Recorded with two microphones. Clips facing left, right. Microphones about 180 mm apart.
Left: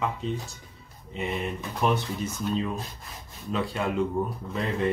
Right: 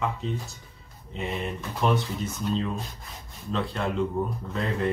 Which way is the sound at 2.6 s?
5° left (ahead or behind).